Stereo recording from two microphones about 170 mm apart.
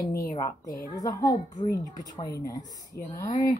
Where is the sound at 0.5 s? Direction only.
50° left (ahead or behind).